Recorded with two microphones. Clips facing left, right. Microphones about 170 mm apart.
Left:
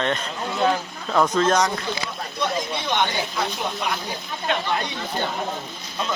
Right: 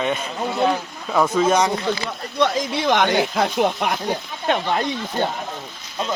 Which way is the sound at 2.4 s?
90° right.